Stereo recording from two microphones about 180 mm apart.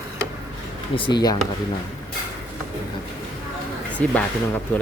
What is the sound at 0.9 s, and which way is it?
Speech, 25° left (ahead or behind).